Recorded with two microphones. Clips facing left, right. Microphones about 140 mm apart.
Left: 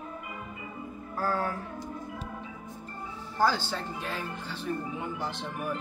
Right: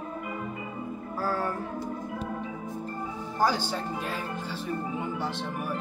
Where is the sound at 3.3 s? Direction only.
15° right (ahead or behind).